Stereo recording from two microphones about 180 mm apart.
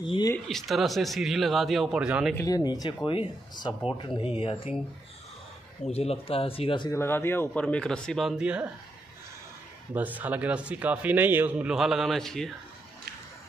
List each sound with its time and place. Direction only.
0.0 s speech: 25° left (ahead or behind)
0.5 s speech: centre (ahead or behind)
2.3 s speech: 20° left (ahead or behind)
5.9 s speech: 35° left (ahead or behind)
6.9 s speech: 15° left (ahead or behind); by 8.6 s 5° right (ahead or behind)
9.9 s speech: 10° right (ahead or behind)